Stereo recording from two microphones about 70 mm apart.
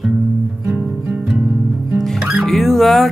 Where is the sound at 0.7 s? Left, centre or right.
Centre.